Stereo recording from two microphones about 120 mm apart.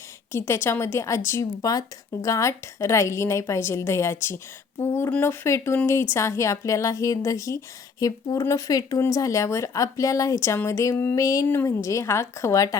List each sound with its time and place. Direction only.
0.3 s speech: 20° left (ahead or behind)